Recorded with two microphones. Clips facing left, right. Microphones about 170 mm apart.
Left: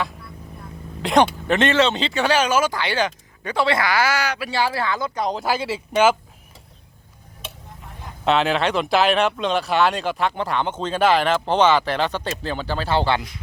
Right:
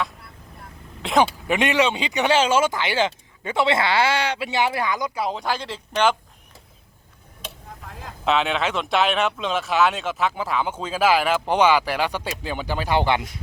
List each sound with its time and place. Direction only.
1.0 s speech: 5° right (ahead or behind)
8.2 s speech: centre (ahead or behind); by 13.2 s 15° right (ahead or behind)